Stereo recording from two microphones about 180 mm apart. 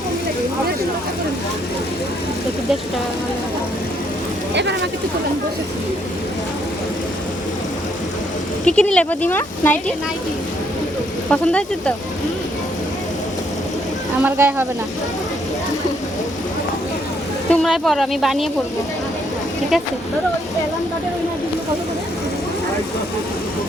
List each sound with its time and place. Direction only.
4.5 s speech: 75° right (ahead or behind)
8.6 s speech: 5° left (ahead or behind)
11.3 s speech: 5° left (ahead or behind)
14.2 s speech: 10° right (ahead or behind)
17.5 s speech: centre (ahead or behind)